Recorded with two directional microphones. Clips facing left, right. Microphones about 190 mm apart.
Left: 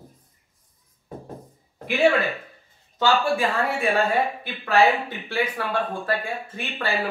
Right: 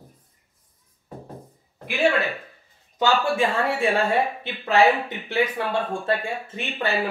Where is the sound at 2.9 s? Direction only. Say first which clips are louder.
Even; 20° right (ahead or behind).